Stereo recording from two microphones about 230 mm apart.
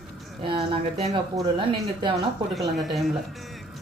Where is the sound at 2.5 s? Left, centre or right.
Centre.